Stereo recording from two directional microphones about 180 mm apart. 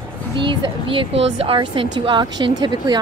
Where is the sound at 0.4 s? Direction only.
30° right (ahead or behind).